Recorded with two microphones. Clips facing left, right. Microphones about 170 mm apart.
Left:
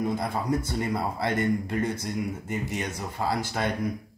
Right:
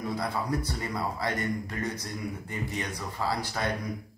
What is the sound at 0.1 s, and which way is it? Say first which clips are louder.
A man's voice: left 3 dB; 25° left (ahead or behind).